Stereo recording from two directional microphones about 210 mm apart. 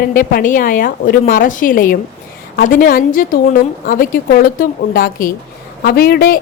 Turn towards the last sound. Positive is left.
turn(degrees=45)  # may be behind; listen again after turning